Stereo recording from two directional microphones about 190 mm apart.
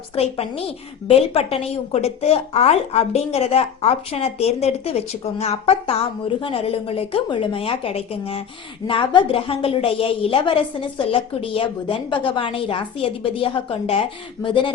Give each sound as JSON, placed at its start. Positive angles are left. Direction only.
{"t": 1.0, "sound": "a woman's voice", "side_deg": 30}